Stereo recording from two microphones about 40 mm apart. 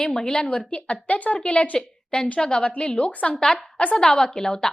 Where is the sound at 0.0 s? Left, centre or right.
Centre; by 1.8 s left.